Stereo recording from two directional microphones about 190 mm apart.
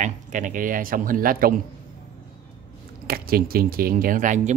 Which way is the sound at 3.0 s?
50° right (ahead or behind).